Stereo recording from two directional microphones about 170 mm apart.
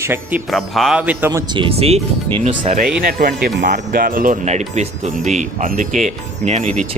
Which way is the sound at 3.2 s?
65° right (ahead or behind).